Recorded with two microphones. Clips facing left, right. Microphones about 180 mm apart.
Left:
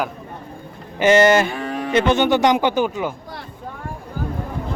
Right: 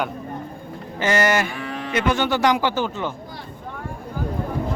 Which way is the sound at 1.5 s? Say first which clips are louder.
Left 4 dB; 45° left (ahead or behind).